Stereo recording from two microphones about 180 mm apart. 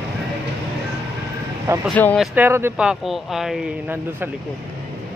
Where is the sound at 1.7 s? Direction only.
15° right (ahead or behind).